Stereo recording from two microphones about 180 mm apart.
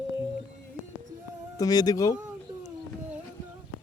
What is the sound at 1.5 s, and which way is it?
Speech, 20° left (ahead or behind).